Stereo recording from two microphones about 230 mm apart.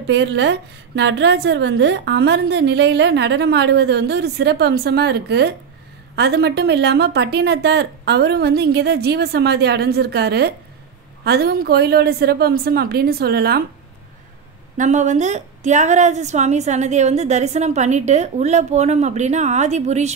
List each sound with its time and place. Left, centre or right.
0.0 s a woman's voice: right
14.8 s a woman's voice: right